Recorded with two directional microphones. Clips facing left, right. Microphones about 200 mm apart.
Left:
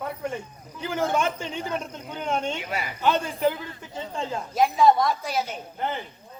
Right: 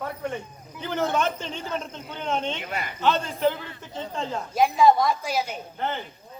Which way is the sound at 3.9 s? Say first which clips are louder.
Even; centre (ahead or behind).